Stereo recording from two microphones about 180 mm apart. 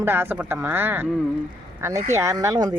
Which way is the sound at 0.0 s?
10° right (ahead or behind).